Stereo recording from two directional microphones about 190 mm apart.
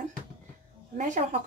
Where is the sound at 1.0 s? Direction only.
40° right (ahead or behind).